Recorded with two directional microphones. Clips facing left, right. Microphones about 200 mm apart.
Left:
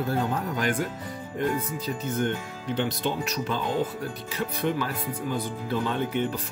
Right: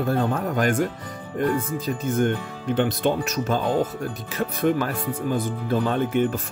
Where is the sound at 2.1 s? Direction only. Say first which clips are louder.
Right 6 dB; 50° right (ahead or behind).